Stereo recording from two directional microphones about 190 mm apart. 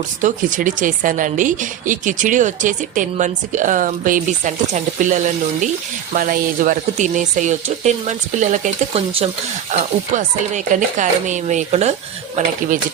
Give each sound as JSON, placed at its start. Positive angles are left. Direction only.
{"t": 0.2, "sound": "a woman's voice", "side_deg": -45}